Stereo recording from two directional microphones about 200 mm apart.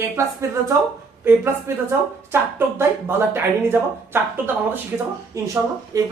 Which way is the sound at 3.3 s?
10° right (ahead or behind).